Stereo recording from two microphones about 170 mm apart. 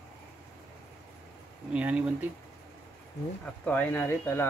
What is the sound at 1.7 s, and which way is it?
Speech, 10° right (ahead or behind).